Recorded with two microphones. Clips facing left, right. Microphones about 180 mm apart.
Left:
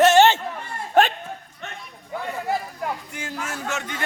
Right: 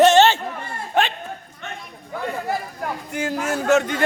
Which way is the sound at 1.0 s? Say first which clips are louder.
Left 3 dB; 45° left (ahead or behind).